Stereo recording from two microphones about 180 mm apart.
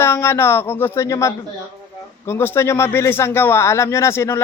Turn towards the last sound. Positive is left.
turn(degrees=15)  # may be behind; listen again after turning